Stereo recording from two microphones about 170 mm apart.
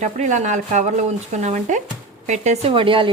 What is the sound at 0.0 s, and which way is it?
A woman's voice, 45° right (ahead or behind).